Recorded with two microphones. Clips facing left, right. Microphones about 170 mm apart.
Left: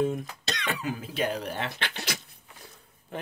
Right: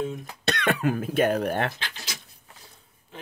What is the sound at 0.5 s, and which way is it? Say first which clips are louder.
Speech: right 8 dB; 60° right (ahead or behind).